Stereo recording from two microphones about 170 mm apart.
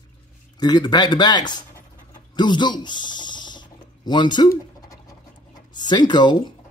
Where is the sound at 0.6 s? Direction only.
25° left (ahead or behind).